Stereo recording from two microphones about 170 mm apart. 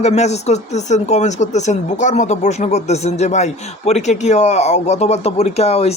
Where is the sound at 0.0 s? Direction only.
40° left (ahead or behind).